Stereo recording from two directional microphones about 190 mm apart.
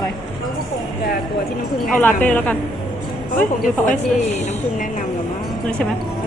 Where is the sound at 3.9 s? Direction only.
40° left (ahead or behind).